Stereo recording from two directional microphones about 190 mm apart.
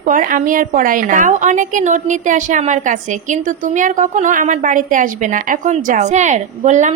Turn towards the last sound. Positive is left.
turn(degrees=-40)  # may be behind; listen again after turning